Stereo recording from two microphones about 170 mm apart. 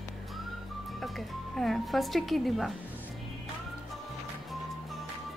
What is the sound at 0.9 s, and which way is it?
Music, centre (ahead or behind).